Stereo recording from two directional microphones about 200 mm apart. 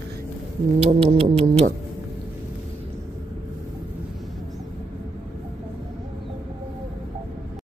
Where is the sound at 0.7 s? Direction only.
30° right (ahead or behind).